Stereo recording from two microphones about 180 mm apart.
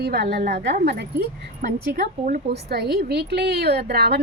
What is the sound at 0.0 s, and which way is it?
A woman's voice, 60° right (ahead or behind).